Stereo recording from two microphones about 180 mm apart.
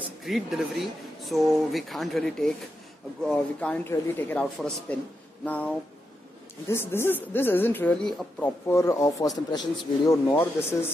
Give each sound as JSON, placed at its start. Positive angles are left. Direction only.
{"t": 0.2, "sound": "speech", "side_deg": 0}
{"t": 6.7, "sound": "speech", "side_deg": 15}
{"t": 10.3, "sound": "speech", "side_deg": 10}